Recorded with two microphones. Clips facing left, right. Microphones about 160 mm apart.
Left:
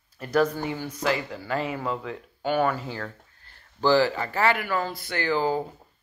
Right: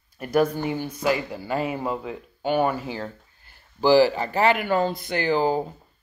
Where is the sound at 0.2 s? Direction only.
10° right (ahead or behind).